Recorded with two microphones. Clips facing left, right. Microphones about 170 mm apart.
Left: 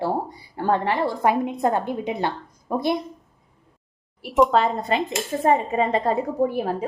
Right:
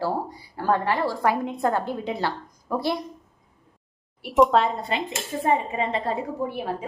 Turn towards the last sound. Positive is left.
turn(degrees=40)  # may be behind; listen again after turning